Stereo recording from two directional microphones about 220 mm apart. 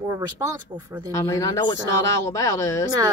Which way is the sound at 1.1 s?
15° left (ahead or behind).